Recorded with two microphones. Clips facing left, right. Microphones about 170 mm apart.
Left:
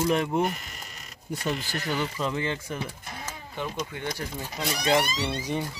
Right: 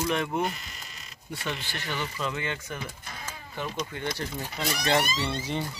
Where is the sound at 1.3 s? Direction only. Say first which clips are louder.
Left 5 dB; 40° left (ahead or behind).